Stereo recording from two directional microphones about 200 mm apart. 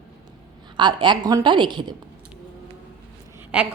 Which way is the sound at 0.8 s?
20° right (ahead or behind).